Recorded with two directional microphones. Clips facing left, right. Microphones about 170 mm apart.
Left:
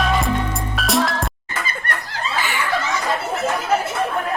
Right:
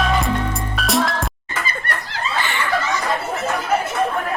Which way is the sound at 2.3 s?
5° left (ahead or behind).